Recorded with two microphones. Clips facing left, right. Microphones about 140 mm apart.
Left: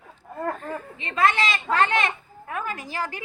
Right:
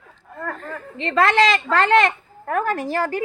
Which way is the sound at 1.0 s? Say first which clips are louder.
Right 6 dB; 85° right.